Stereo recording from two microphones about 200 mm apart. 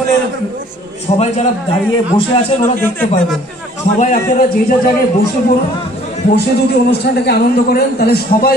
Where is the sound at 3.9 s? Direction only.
40° left (ahead or behind).